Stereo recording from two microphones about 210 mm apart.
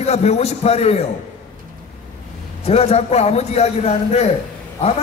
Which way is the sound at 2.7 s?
30° left (ahead or behind).